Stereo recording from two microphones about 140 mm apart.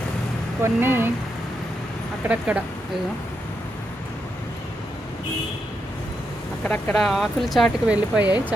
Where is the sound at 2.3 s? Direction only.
10° right (ahead or behind).